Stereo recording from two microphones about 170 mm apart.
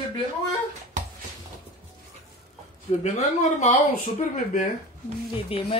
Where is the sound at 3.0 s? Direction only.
45° left (ahead or behind).